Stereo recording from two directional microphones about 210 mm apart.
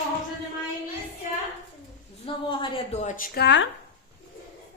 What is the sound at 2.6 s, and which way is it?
Speech, 30° left (ahead or behind).